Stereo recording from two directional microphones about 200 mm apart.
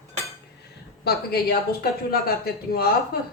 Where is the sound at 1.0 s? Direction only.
50° left (ahead or behind).